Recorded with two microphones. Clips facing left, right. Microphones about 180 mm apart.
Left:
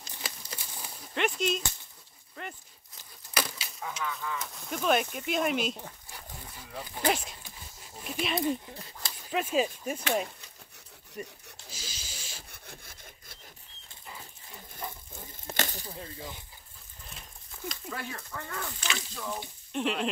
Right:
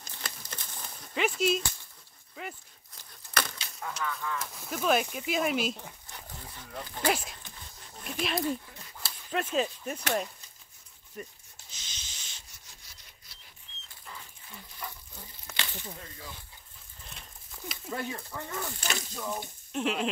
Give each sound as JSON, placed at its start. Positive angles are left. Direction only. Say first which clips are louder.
{"t": 0.1, "sound": "a sound", "louder": "left 1 dB", "side_deg": 10}
{"t": 2.4, "sound": "speech", "louder": "right 1 dB", "side_deg": -5}
{"t": 5.8, "sound": "speech", "louder": "left 1 dB", "side_deg": 10}
{"t": 7.4, "sound": "a sound", "louder": "even", "side_deg": 5}
{"t": 9.0, "sound": "speech", "louder": "left 1 dB", "side_deg": 5}
{"t": 11.2, "sound": "speech", "louder": "left 2 dB", "side_deg": 10}
{"t": 11.7, "sound": "rub", "louder": "left 6 dB", "side_deg": 5}
{"t": 12.4, "sound": "sawing", "louder": "left 9 dB", "side_deg": 55}
{"t": 15.5, "sound": "a sound", "louder": "left 5 dB", "side_deg": 40}
{"t": 16.0, "sound": "speech", "louder": "left 4 dB", "side_deg": 25}
{"t": 17.0, "sound": "a sound", "louder": "left 1 dB", "side_deg": 0}
{"t": 18.1, "sound": "speech", "louder": "right 2 dB", "side_deg": -15}
{"t": 18.8, "sound": "speech", "louder": "right 1 dB", "side_deg": -45}
{"t": 19.1, "sound": "speech", "louder": "right 1 dB", "side_deg": -5}